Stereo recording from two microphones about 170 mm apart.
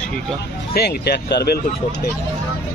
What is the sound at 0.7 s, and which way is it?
Speech, 75° left (ahead or behind).